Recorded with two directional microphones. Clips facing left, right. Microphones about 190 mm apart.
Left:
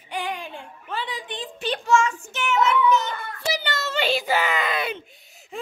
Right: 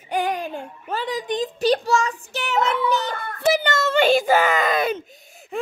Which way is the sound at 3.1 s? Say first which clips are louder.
Right 8 dB; 50° right (ahead or behind).